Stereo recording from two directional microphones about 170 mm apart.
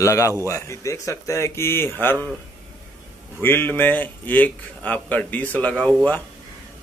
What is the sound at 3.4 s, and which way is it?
A man's voice, 10° left (ahead or behind).